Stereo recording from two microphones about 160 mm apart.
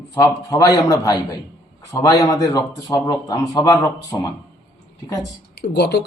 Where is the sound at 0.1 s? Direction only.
20° left (ahead or behind).